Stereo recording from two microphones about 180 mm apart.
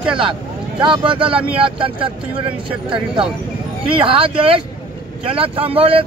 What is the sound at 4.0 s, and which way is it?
Speech, 30° right (ahead or behind).